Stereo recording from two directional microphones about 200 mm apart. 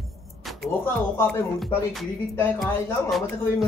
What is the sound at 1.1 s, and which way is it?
Speech, 10° left (ahead or behind).